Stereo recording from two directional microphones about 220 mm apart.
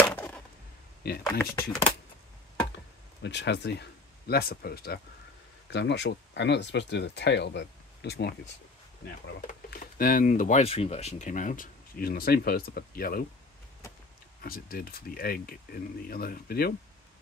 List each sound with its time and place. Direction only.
0.0 s a sound: 10° left (ahead or behind)
1.4 s speech: 15° left (ahead or behind)
3.2 s speech: 50° left (ahead or behind)
14.4 s speech: 40° left (ahead or behind)